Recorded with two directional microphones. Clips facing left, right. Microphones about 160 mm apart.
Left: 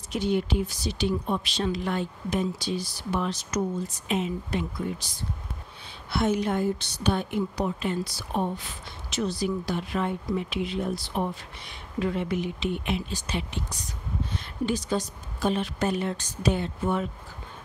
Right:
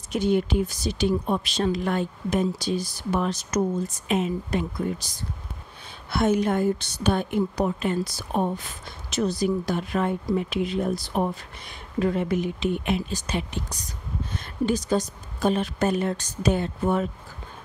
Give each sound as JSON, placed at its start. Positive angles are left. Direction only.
{"t": 0.1, "sound": "speech", "side_deg": -50}